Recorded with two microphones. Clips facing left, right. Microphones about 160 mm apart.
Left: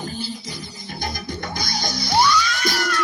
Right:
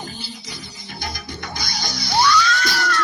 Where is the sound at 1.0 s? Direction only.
50° left (ahead or behind).